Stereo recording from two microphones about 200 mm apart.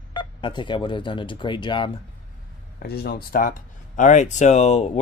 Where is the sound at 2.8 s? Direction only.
50° left (ahead or behind).